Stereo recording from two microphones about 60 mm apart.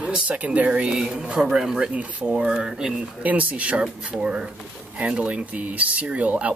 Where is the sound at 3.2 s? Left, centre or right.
Right.